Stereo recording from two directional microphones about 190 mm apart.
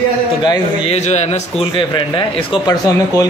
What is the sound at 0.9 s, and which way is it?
A man's voice, 35° left (ahead or behind).